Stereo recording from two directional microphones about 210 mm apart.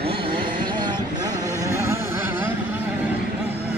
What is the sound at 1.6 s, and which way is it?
Music, 15° right (ahead or behind).